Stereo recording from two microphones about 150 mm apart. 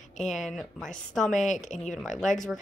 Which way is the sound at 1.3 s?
55° left (ahead or behind).